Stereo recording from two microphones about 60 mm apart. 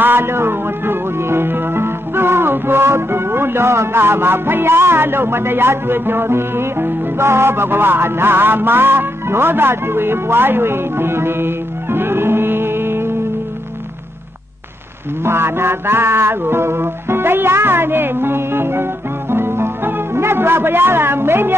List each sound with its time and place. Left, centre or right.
0.0 s music: right
15.2 s music: right